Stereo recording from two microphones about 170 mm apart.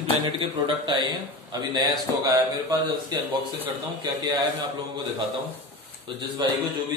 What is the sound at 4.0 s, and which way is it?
Speech, 20° right (ahead or behind).